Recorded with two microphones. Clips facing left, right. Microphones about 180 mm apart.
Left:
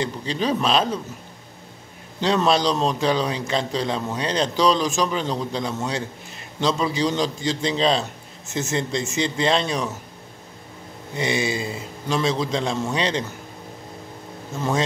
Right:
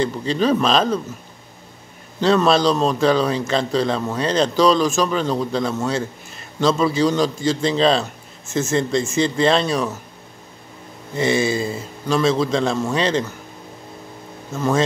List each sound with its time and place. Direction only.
0.0 s a man's voice: 15° left (ahead or behind)
2.1 s a man's voice: 15° left (ahead or behind)
11.1 s a man's voice: 15° left (ahead or behind)